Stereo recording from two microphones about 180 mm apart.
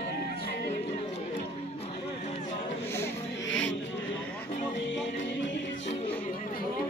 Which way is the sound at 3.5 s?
90° left.